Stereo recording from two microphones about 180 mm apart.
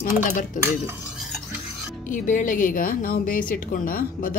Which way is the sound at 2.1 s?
45° left (ahead or behind).